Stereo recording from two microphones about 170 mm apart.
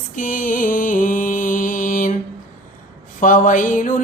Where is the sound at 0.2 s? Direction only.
55° left (ahead or behind).